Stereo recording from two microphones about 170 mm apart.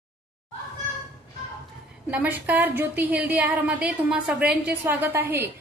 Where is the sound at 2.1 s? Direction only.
10° right (ahead or behind).